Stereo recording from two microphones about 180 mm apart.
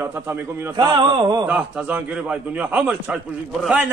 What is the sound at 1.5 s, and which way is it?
A man's voice, 5° right (ahead or behind).